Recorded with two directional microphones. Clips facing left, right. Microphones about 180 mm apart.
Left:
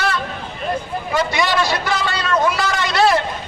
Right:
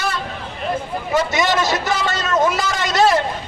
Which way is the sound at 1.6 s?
45° right (ahead or behind).